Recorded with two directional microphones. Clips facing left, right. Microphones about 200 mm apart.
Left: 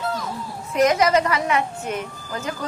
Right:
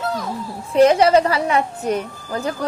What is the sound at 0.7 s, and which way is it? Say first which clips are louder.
A woman's voice: right 5 dB; 30° right (ahead or behind).